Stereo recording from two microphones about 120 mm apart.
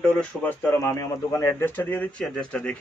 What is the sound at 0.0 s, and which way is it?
Speech, 10° left (ahead or behind).